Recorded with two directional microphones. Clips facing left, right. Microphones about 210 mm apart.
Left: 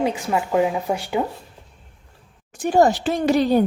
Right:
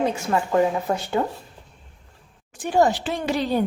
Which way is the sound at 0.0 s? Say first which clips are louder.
Left 1 dB; 15° left (ahead or behind).